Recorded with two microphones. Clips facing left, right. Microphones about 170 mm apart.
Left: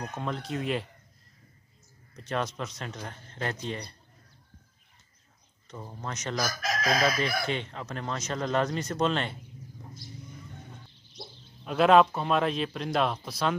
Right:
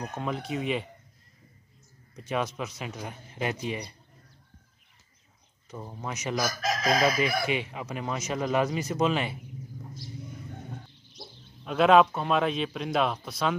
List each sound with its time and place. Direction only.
0.0 s speech: 5° right (ahead or behind)
2.1 s speech: 5° right (ahead or behind)
5.7 s speech: 5° right (ahead or behind)
6.4 s chicken: 25° right (ahead or behind)
7.1 s speech: 10° right (ahead or behind)
11.6 s speech: centre (ahead or behind)